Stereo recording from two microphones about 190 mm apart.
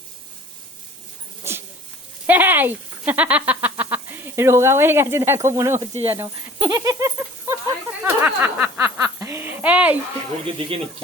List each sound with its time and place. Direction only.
1.5 s dog: 15° right (ahead or behind)
2.2 s speech: 10° right (ahead or behind)
6.1 s a sound: 10° right (ahead or behind)
10.4 s speech: 30° right (ahead or behind)